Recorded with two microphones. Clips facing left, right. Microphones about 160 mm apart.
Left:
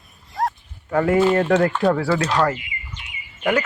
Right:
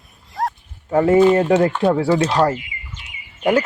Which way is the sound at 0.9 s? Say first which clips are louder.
Right 4 dB; 20° right (ahead or behind).